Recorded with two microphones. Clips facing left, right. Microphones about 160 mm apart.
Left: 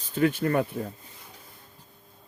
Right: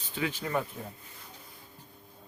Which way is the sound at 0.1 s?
50° left (ahead or behind).